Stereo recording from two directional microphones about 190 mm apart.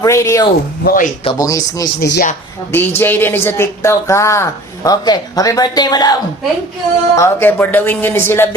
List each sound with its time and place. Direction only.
0.0 s speech: 15° left (ahead or behind)
0.9 s speech: 45° left (ahead or behind)
1.2 s speech: 20° left (ahead or behind)
2.0 s speech: 60° left (ahead or behind)
2.7 s speech: 10° left (ahead or behind)
7.2 s speech: 10° left (ahead or behind)